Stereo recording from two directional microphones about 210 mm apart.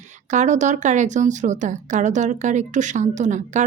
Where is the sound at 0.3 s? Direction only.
35° right (ahead or behind).